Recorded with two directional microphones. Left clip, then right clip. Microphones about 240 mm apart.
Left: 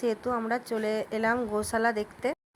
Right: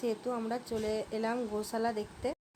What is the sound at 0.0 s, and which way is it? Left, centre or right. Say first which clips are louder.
A woman's voice: left 6 dB; centre.